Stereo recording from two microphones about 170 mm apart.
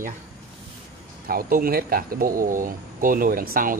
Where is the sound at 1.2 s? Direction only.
60° right (ahead or behind).